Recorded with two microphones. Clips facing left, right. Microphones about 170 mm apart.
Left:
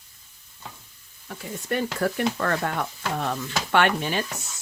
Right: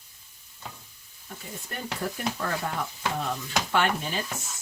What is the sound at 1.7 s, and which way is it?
Speech, 75° left (ahead or behind).